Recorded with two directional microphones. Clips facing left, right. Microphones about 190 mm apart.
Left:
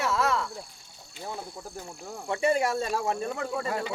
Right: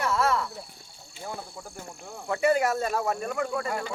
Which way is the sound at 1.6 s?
Centre (ahead or behind).